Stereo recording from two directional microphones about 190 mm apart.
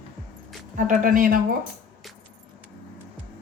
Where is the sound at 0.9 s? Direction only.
45° right (ahead or behind).